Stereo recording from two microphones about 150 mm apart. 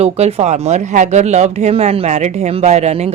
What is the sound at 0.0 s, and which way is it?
Speech, 40° right (ahead or behind).